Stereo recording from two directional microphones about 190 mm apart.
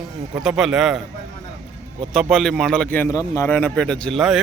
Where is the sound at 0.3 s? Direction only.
Centre (ahead or behind).